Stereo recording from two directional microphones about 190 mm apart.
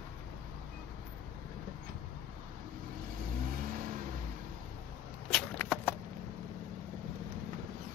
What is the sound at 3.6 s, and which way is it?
Vehicle, 45° right (ahead or behind).